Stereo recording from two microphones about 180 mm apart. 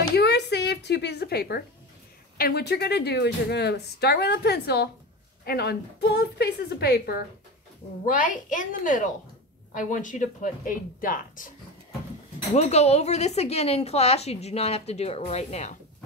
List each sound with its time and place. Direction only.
0.1 s a sound: 65° left (ahead or behind)
2.3 s speech: 60° left (ahead or behind)
8.0 s speech: 50° left (ahead or behind)
12.5 s a woman's voice: 35° left (ahead or behind)